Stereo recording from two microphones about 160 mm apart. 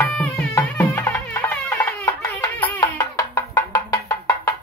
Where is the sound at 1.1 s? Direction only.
15° left (ahead or behind).